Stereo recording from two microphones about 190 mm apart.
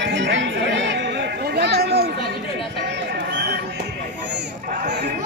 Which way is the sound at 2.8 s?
65° right (ahead or behind).